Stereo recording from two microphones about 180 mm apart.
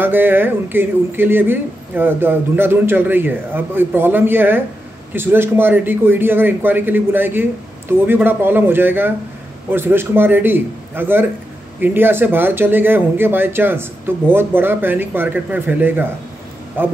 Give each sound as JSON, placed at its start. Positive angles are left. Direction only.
{"t": 0.0, "sound": "speech", "side_deg": -10}